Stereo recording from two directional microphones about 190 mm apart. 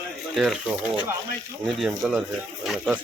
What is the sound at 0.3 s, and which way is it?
Speech, centre (ahead or behind).